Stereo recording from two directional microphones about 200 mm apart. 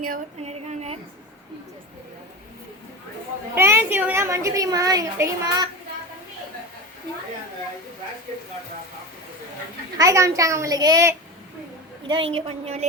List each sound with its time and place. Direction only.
0.0 s female singing: 35° right (ahead or behind)
3.5 s a woman's voice: 10° right (ahead or behind)
10.0 s a woman's voice: 15° right (ahead or behind); by 12.9 s 30° right (ahead or behind)